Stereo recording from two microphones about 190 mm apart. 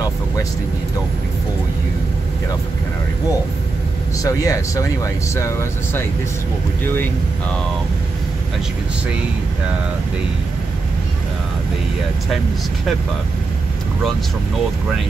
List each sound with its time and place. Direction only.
4.2 s speech: 20° left (ahead or behind)